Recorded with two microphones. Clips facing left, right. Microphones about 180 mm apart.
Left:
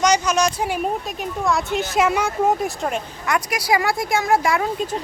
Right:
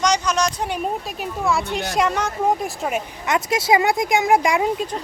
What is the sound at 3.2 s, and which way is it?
Speech, 20° right (ahead or behind).